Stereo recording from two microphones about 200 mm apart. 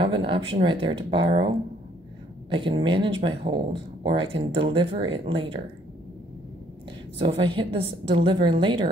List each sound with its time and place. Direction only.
0.0 s speech: 25° right (ahead or behind)
2.5 s speech: 25° right (ahead or behind)
7.2 s speech: 25° right (ahead or behind)